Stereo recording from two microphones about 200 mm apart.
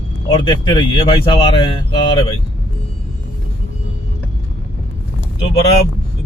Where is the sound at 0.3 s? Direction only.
20° left (ahead or behind).